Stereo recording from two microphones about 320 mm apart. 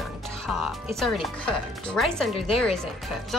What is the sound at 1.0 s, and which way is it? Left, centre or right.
Speech, centre.